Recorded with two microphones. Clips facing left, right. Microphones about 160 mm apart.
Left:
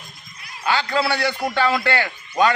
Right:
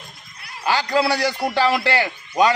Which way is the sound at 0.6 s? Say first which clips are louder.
Right 1 dB; 40° right (ahead or behind).